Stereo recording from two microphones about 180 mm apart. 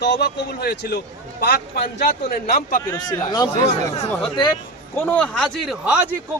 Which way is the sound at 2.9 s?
20° left (ahead or behind).